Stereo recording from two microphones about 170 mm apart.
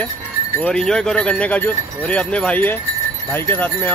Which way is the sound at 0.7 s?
5° left (ahead or behind).